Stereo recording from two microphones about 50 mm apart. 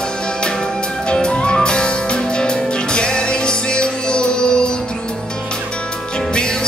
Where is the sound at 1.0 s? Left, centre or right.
Centre.